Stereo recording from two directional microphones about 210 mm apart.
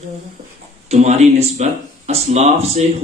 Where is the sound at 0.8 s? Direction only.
30° right (ahead or behind).